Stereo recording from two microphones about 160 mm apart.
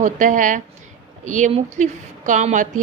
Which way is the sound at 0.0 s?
55° right (ahead or behind).